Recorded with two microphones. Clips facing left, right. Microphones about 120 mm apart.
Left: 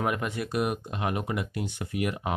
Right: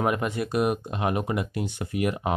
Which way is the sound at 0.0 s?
30° right (ahead or behind).